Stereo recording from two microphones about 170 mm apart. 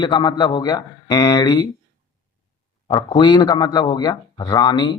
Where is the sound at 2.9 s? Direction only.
25° left (ahead or behind).